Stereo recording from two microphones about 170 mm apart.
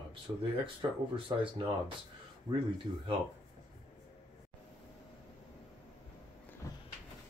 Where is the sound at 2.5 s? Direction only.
25° right (ahead or behind).